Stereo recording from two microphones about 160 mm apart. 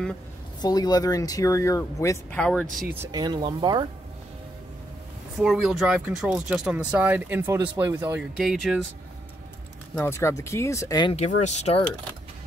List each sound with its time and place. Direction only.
0.6 s speech: 25° left (ahead or behind)
2.3 s speech: 5° left (ahead or behind)
3.1 s speech: 25° right (ahead or behind)
5.4 s speech: centre (ahead or behind)
8.4 s speech: centre (ahead or behind)
9.9 s speech: 15° left (ahead or behind)
11.1 s speech: 45° left (ahead or behind)